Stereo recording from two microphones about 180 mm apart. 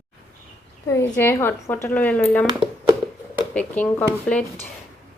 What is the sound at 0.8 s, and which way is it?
Speech, 15° left (ahead or behind).